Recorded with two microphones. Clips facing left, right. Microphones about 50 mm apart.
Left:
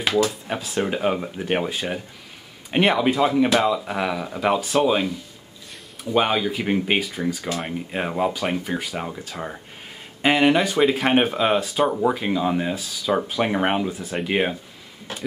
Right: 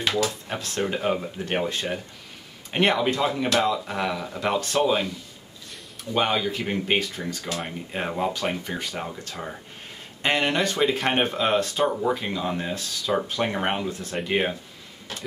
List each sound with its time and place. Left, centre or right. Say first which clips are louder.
0.0 s speech: left 4 dB; centre
6.1 s speech: left 3 dB; centre